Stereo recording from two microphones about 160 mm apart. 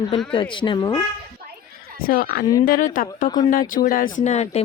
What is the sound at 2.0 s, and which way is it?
Speech, 65° left (ahead or behind).